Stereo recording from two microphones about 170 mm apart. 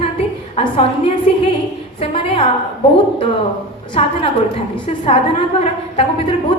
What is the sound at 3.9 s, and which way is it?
A woman's voice, 30° left (ahead or behind).